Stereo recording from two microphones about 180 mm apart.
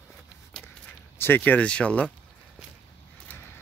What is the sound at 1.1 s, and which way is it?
Speech, 10° left (ahead or behind).